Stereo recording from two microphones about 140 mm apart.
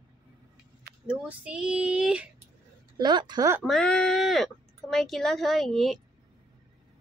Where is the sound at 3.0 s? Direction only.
30° right (ahead or behind).